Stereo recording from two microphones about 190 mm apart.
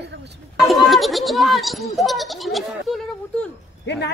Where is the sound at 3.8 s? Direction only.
70° left (ahead or behind).